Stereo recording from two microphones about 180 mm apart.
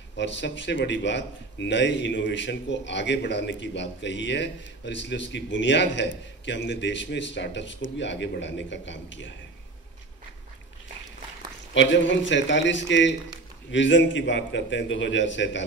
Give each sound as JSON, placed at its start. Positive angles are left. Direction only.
{"t": 0.1, "sound": "speech", "side_deg": 80}
{"t": 11.7, "sound": "a man's voice", "side_deg": 90}